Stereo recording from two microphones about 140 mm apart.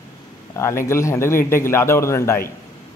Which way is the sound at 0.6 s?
20° left (ahead or behind).